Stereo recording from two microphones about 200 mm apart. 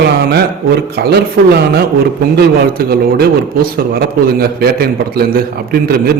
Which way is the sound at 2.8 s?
50° right (ahead or behind).